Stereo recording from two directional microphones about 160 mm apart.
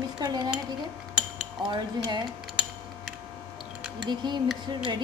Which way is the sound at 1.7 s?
30° right (ahead or behind).